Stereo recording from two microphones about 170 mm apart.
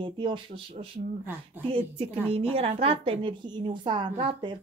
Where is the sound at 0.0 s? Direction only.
30° right (ahead or behind).